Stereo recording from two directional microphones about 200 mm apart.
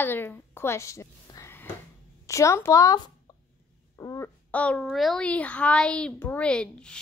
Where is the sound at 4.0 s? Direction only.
15° left (ahead or behind).